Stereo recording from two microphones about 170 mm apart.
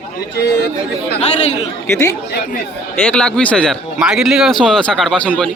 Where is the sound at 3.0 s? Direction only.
5° left (ahead or behind).